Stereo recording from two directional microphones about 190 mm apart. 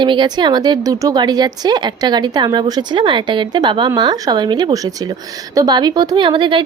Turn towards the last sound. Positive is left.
turn(degrees=-25)  # may be behind; listen again after turning